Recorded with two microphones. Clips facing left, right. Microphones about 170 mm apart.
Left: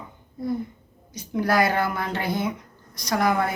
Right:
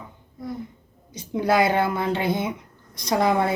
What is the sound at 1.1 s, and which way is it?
A woman's voice, 25° right (ahead or behind).